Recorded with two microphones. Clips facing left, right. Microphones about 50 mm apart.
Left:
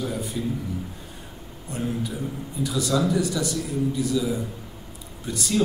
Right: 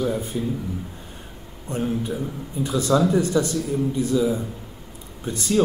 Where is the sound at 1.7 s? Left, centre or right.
Right.